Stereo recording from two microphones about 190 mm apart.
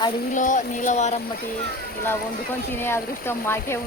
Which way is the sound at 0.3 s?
40° left (ahead or behind).